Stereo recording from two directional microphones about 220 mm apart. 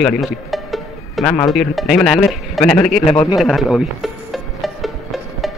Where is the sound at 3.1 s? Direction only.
25° left (ahead or behind).